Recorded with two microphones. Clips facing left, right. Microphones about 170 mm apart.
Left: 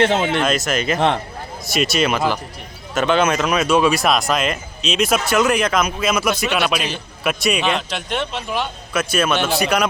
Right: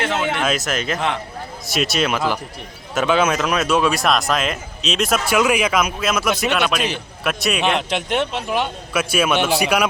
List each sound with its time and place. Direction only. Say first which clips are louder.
0.0 s speech: left 5 dB; 30° left (ahead or behind)
0.3 s speech: left 2 dB; 5° right (ahead or behind)
0.9 s a man's voice: left 5 dB; 35° left (ahead or behind)
1.6 s speech: left 2 dB; centre (ahead or behind)
7.9 s a man's voice: right 3 dB; 15° right (ahead or behind)